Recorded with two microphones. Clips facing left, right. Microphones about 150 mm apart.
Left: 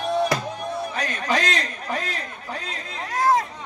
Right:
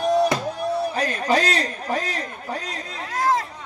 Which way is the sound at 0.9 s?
35° right (ahead or behind).